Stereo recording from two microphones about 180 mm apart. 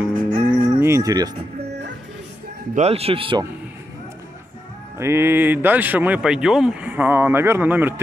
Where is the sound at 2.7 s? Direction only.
35° right (ahead or behind).